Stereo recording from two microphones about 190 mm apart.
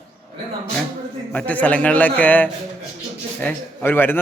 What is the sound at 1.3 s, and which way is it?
A man's voice, 10° left (ahead or behind).